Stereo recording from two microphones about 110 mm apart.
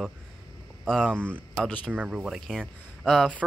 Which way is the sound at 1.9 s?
10° right (ahead or behind).